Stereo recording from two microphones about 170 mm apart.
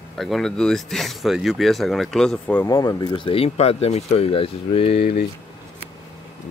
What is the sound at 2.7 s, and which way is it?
Speech, 20° left (ahead or behind).